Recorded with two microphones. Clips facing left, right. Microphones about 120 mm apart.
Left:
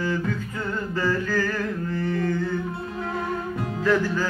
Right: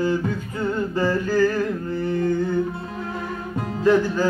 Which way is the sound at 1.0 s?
20° right (ahead or behind).